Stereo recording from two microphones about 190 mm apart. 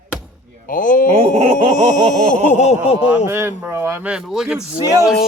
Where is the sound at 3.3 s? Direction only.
10° right (ahead or behind).